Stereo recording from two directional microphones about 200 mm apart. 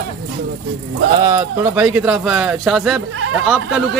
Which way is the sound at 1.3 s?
10° right (ahead or behind).